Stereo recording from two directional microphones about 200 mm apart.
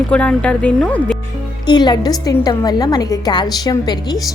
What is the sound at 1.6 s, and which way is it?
A woman's voice, 20° left (ahead or behind).